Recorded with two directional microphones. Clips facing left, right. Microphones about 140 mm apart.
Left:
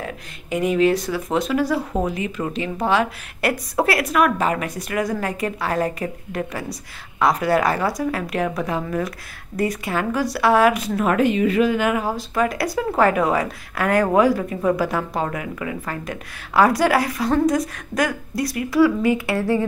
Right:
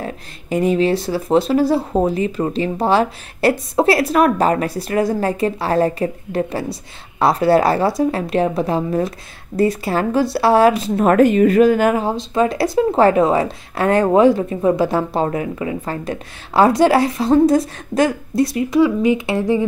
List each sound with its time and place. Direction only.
0.0 s speech: 35° right (ahead or behind)
11.1 s speech: 45° right (ahead or behind)
12.0 s speech: 25° right (ahead or behind)